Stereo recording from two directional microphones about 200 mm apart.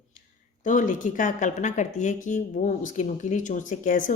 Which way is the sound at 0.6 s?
40° left (ahead or behind).